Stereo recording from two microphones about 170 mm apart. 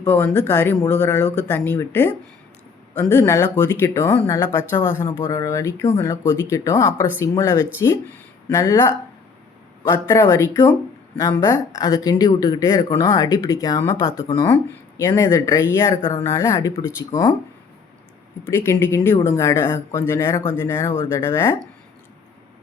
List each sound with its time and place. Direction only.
0.0 s speech: 10° left (ahead or behind)
18.4 s speech: 15° left (ahead or behind)